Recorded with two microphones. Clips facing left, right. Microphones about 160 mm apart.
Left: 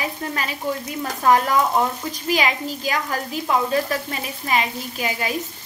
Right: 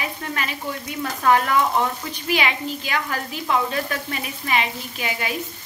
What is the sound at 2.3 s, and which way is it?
Sizzle, 35° left (ahead or behind).